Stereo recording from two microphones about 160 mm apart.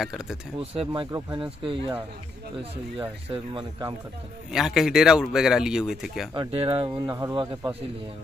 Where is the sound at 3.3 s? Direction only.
30° right (ahead or behind).